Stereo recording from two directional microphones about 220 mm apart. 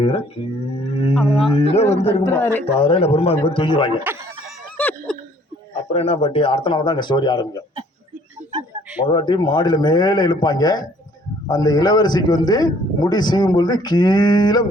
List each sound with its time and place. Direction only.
0.4 s speech: 25° left (ahead or behind)
2.3 s speech: 10° left (ahead or behind)
2.7 s speech: 25° left (ahead or behind)
4.0 s chicken: 10° right (ahead or behind)
4.8 s a sound: 5° left (ahead or behind)
5.7 s speech: 30° left (ahead or behind)
9.0 s speech: 20° left (ahead or behind)